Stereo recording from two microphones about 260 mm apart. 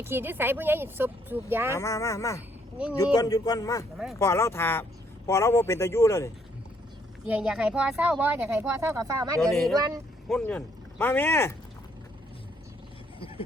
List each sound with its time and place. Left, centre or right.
0.0 s speech: centre
1.7 s a man's voice: centre
3.9 s speech: centre
4.2 s a man's voice: centre
7.3 s speech: centre
9.4 s speech: centre
9.7 s speech: centre
10.2 s a man's voice: centre
13.1 s a sound: left